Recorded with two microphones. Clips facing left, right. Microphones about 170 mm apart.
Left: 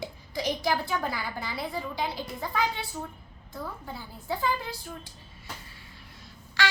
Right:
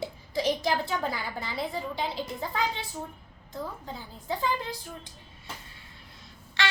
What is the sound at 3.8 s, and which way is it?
Speech, 20° right (ahead or behind).